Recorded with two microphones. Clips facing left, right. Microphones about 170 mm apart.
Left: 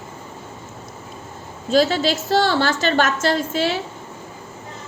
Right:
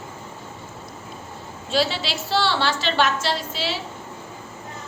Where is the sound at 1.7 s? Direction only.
45° left (ahead or behind).